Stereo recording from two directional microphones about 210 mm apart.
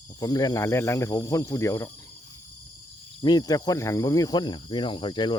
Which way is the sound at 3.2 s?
20° left (ahead or behind).